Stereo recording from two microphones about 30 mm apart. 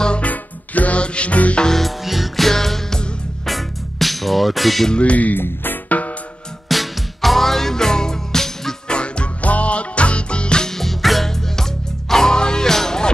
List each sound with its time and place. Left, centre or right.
0.2 s music: left
0.9 s music: left
1.3 s speech: left
1.7 s music: centre
2.5 s music: centre
3.4 s music: centre
4.9 s speech: left
5.3 s speech: left
6.7 s music: centre
8.8 s music: left
9.4 s music: left
10.6 s music: centre
12.4 s music: left
12.6 s music: centre